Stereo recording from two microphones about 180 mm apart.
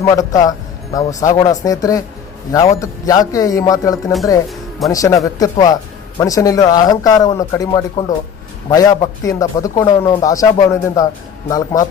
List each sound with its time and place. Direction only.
0.0 s speech: 20° left (ahead or behind)